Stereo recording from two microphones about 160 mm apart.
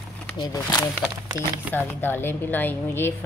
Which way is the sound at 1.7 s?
15° left (ahead or behind).